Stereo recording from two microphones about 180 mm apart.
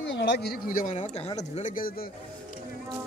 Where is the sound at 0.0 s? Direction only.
80° left; by 1.9 s 40° left (ahead or behind).